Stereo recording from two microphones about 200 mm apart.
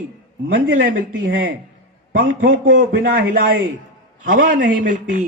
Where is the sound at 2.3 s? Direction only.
45° right (ahead or behind).